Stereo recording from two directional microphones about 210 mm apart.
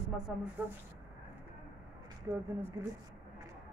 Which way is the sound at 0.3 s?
Centre (ahead or behind).